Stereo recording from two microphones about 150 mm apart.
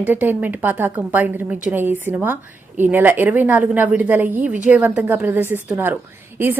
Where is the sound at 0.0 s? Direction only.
10° right (ahead or behind).